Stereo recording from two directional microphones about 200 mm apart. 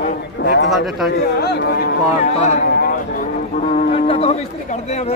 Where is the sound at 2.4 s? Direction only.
35° left (ahead or behind).